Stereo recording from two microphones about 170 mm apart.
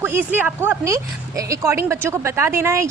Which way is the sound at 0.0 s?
15° right (ahead or behind).